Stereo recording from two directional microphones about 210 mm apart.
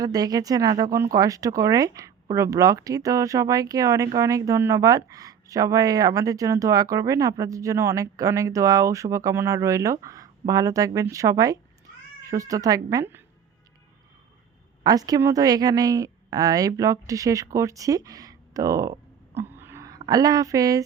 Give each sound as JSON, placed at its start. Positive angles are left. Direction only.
{"t": 0.0, "sound": "speech", "side_deg": -20}
{"t": 14.8, "sound": "speech", "side_deg": -15}
{"t": 19.4, "sound": "a sound", "side_deg": -10}
{"t": 20.0, "sound": "speech", "side_deg": -15}